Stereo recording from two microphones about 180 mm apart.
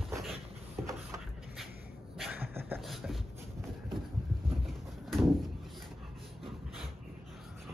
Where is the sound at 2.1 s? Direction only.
5° right (ahead or behind).